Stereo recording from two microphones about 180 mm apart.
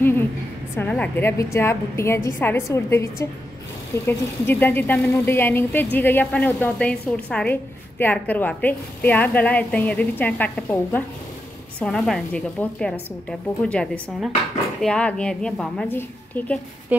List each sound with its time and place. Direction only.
0.7 s a woman's voice: 10° left (ahead or behind)